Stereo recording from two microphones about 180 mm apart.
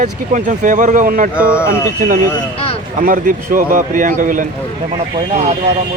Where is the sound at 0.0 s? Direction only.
45° right (ahead or behind).